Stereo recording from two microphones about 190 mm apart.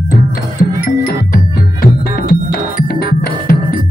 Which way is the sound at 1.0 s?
50° left (ahead or behind).